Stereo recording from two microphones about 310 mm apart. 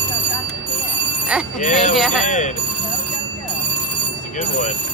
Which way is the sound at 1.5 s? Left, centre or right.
Left.